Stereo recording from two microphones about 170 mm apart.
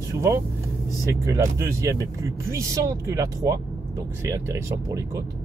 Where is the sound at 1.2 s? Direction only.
20° right (ahead or behind).